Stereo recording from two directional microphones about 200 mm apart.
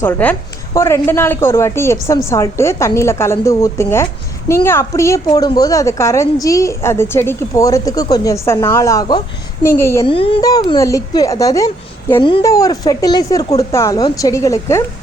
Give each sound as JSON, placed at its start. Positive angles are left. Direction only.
{"t": 0.0, "sound": "a woman's voice", "side_deg": 10}
{"t": 10.0, "sound": "a woman's voice", "side_deg": 25}